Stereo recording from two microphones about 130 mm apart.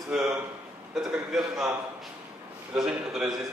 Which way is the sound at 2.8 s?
5° right (ahead or behind).